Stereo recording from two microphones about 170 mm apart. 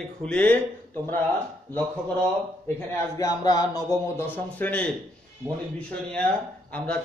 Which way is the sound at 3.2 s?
20° left (ahead or behind).